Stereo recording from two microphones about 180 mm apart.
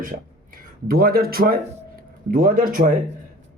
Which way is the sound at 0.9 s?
55° right (ahead or behind).